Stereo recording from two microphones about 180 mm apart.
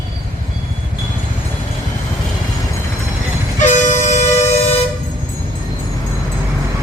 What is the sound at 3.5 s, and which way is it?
Vehicle, 40° left (ahead or behind).